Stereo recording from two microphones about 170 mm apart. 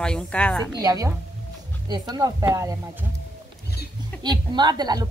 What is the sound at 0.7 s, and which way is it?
A woman's voice, 20° right (ahead or behind).